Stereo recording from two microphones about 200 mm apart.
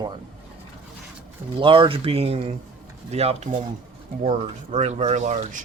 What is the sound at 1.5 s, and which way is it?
Speech, 25° right (ahead or behind).